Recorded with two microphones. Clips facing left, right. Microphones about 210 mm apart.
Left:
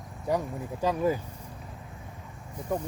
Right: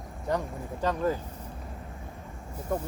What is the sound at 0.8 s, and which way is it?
Speech, 10° left (ahead or behind).